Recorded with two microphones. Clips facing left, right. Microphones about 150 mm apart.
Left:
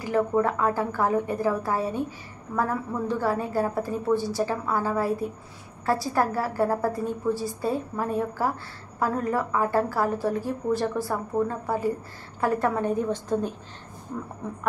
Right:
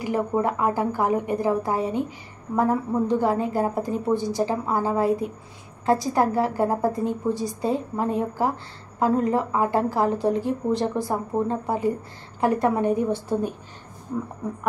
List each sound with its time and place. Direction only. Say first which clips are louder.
0.0 s a woman's voice: even; 15° right (ahead or behind)